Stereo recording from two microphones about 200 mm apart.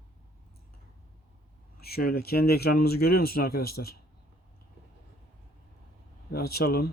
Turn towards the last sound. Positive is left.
turn(degrees=50)  # may be behind; listen again after turning